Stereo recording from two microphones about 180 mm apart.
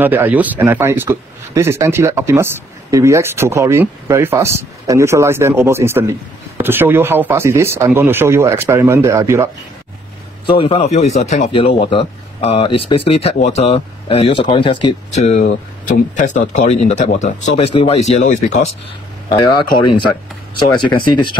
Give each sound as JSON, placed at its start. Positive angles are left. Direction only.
{"t": 0.0, "sound": "a man's voice", "side_deg": -10}
{"t": 10.4, "sound": "speech", "side_deg": 30}
{"t": 15.0, "sound": "speech", "side_deg": 40}
{"t": 20.7, "sound": "speech", "side_deg": 25}